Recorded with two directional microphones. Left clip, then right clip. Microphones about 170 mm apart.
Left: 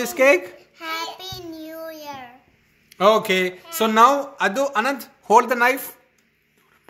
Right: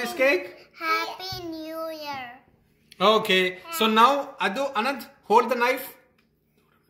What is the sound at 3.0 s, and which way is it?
Speech, 50° left (ahead or behind).